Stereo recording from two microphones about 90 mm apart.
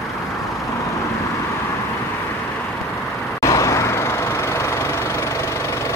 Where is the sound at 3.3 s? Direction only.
35° left (ahead or behind).